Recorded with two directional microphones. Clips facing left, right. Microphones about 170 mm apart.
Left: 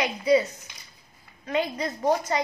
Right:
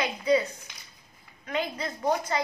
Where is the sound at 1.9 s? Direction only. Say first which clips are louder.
Left 3 dB; 25° left (ahead or behind).